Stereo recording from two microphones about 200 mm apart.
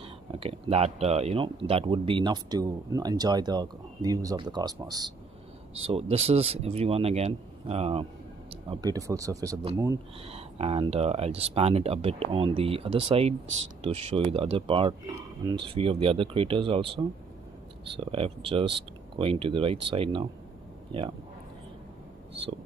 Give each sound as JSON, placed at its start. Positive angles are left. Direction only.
{"t": 0.0, "sound": "speech", "side_deg": -25}
{"t": 5.8, "sound": "speech", "side_deg": -30}
{"t": 8.6, "sound": "speech", "side_deg": -15}
{"t": 10.2, "sound": "speech", "side_deg": -30}